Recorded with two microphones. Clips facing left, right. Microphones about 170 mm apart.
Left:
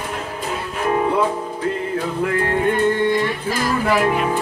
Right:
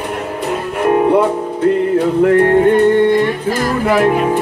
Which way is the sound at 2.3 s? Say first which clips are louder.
Right 9 dB; 55° right (ahead or behind).